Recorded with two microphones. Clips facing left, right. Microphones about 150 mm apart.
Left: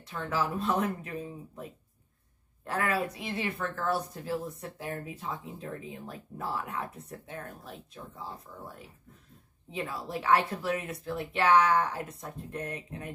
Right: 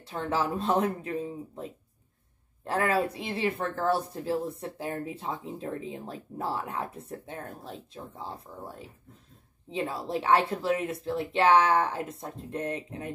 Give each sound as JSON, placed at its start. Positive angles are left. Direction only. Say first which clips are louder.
{"t": 0.0, "sound": "speech", "louder": "right 3 dB", "side_deg": -30}